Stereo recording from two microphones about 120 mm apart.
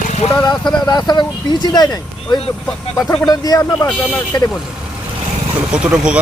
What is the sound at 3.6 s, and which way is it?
Speech, 20° left (ahead or behind).